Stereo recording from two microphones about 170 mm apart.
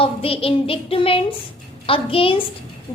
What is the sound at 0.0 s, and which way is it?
Child singing, 35° left (ahead or behind).